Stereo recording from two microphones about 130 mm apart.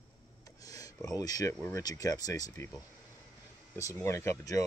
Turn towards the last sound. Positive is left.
turn(degrees=25)  # may be behind; listen again after turning